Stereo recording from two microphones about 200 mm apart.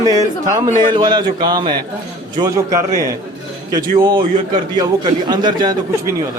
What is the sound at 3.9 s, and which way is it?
Speech, 25° right (ahead or behind).